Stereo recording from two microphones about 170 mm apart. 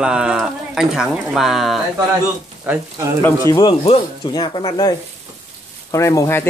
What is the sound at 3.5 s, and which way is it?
Speech, 25° left (ahead or behind).